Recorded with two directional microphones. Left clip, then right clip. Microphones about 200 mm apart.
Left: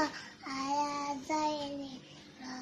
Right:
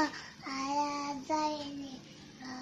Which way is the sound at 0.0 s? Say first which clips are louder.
Right 1 dB; 10° right (ahead or behind).